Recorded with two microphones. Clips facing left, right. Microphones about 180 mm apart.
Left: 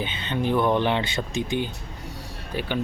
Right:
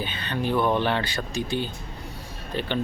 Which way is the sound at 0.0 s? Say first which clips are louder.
Left 2 dB; 20° left (ahead or behind).